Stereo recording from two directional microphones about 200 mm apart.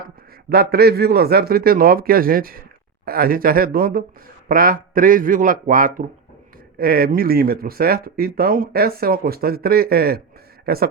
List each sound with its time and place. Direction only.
0.5 s speech: 50° right (ahead or behind)